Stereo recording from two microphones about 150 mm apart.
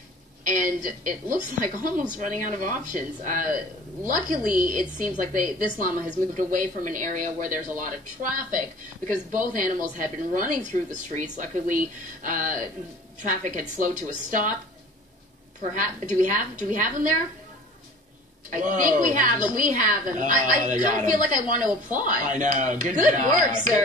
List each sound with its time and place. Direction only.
0.5 s a woman's voice: 60° right (ahead or behind)
15.7 s a woman's voice: 60° right (ahead or behind)
18.5 s a woman's voice: 60° right (ahead or behind)